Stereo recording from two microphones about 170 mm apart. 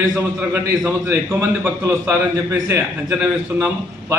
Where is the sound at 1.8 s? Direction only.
15° right (ahead or behind).